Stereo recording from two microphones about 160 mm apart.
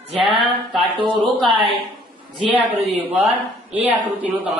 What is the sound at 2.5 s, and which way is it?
A man's voice, 10° right (ahead or behind).